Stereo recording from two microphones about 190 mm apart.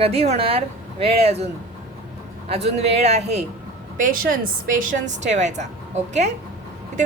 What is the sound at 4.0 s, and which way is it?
A woman's voice, 50° right (ahead or behind).